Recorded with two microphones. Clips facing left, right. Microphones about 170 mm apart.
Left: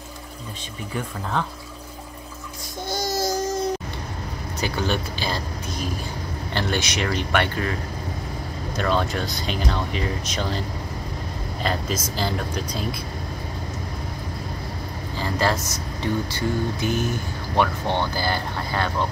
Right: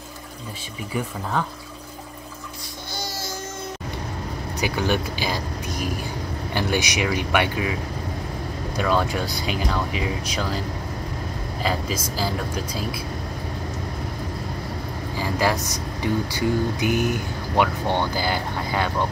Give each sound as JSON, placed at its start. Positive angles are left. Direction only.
{"t": 1.3, "sound": "speech", "side_deg": -5}
{"t": 2.9, "sound": "music", "side_deg": 45}
{"t": 4.6, "sound": "speech", "side_deg": -15}
{"t": 8.7, "sound": "speech", "side_deg": -10}
{"t": 11.6, "sound": "speech", "side_deg": -5}
{"t": 15.1, "sound": "speech", "side_deg": -10}